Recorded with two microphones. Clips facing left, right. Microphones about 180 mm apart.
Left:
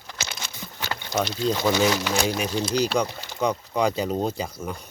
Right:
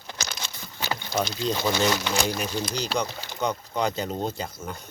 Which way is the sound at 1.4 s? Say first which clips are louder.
Left 4 dB; 5° left (ahead or behind).